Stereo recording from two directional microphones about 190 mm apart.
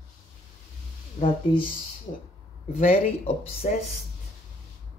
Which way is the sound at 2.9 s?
30° left (ahead or behind).